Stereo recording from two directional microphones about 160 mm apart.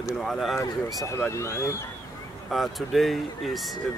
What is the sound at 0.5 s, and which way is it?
Speech, 15° left (ahead or behind).